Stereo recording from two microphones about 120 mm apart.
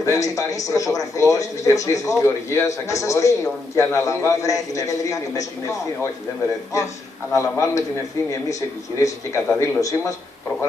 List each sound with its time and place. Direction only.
0.0 s a man's voice: 25° left (ahead or behind)
7.3 s a man's voice: 25° left (ahead or behind)